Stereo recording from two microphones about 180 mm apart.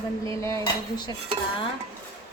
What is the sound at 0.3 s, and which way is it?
Cutlery, 15° left (ahead or behind).